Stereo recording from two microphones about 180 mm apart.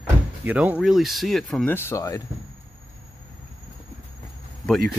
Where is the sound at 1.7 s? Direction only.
15° left (ahead or behind).